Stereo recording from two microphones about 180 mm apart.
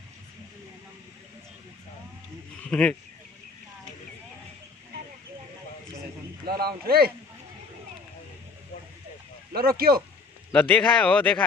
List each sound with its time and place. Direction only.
2.7 s a man's voice: 5° left (ahead or behind)
6.4 s speech: 60° right (ahead or behind)
9.5 s speech: 55° right (ahead or behind)
10.5 s a man's voice: 5° left (ahead or behind)